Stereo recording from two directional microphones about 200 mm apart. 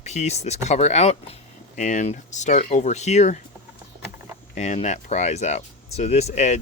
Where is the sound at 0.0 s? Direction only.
35° left (ahead or behind).